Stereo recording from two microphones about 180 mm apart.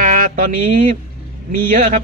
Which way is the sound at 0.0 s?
50° right (ahead or behind).